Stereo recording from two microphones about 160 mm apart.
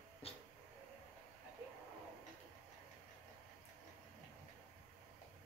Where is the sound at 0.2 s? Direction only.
35° left (ahead or behind).